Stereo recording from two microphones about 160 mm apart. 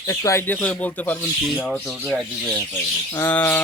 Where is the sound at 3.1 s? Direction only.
15° left (ahead or behind).